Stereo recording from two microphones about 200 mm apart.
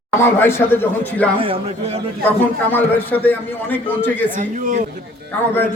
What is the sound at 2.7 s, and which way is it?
A man's voice, 10° left (ahead or behind).